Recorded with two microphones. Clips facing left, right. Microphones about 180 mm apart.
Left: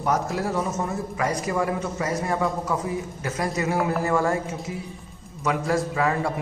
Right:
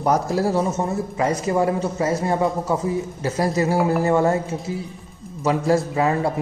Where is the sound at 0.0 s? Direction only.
35° right (ahead or behind).